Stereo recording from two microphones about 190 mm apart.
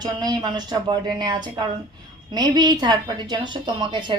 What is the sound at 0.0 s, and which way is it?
A woman's voice, 20° right (ahead or behind).